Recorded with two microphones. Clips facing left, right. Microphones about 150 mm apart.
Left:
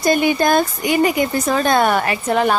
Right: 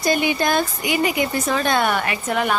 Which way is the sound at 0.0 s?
50° left (ahead or behind).